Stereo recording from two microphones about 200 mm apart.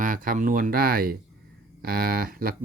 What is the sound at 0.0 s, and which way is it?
Speech, 40° right (ahead or behind).